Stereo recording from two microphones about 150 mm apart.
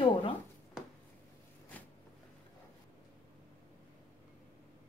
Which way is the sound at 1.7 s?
10° left (ahead or behind).